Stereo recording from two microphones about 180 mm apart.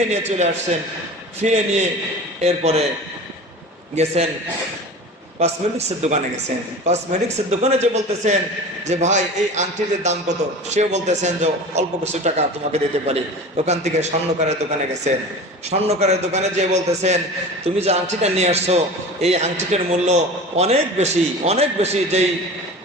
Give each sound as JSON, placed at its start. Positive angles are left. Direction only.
{"t": 0.1, "sound": "a man's voice", "side_deg": -40}
{"t": 3.9, "sound": "a man's voice", "side_deg": -35}
{"t": 5.4, "sound": "a man's voice", "side_deg": -35}
{"t": 15.7, "sound": "a man's voice", "side_deg": -35}